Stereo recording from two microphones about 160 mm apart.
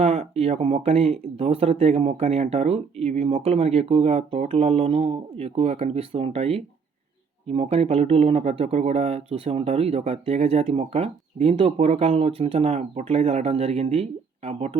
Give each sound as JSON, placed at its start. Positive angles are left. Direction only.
{"t": 0.0, "sound": "speech", "side_deg": -40}